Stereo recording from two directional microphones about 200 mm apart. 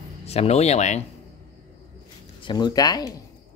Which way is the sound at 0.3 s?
30° left (ahead or behind).